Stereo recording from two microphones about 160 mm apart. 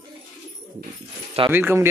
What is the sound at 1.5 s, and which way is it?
Speech, 15° right (ahead or behind).